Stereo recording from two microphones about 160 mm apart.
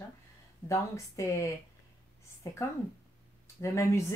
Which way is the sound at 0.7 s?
20° left (ahead or behind).